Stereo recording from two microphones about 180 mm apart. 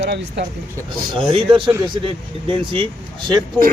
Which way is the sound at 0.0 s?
70° right (ahead or behind).